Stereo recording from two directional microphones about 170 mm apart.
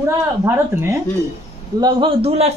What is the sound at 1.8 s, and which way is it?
Speech, 25° right (ahead or behind).